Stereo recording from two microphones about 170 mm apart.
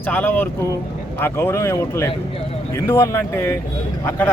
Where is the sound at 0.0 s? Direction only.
10° left (ahead or behind).